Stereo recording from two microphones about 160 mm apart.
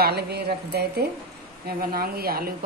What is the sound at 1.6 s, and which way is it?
Speech, 70° right (ahead or behind).